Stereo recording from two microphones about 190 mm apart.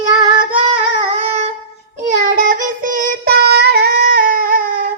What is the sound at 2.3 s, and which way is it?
Child singing, 45° right (ahead or behind).